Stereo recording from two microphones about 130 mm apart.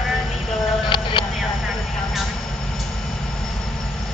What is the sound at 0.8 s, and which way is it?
Vehicle, 40° left (ahead or behind).